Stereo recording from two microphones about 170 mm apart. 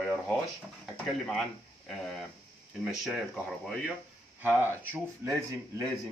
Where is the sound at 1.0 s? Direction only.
Centre (ahead or behind).